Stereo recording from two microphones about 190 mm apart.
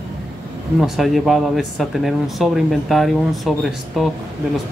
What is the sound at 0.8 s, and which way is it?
Speech, centre (ahead or behind).